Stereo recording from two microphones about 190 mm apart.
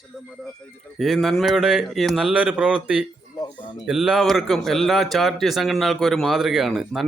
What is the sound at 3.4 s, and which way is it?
Speech, 25° left (ahead or behind).